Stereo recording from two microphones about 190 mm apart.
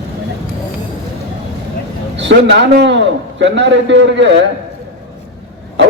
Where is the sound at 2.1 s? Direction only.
70° right (ahead or behind).